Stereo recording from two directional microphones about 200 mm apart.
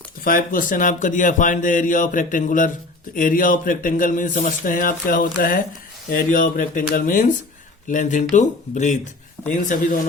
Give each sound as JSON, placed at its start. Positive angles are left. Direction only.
{"t": 0.3, "sound": "a man's voice", "side_deg": 45}